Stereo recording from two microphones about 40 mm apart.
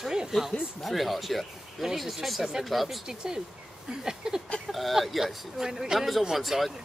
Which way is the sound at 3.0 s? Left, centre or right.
Centre.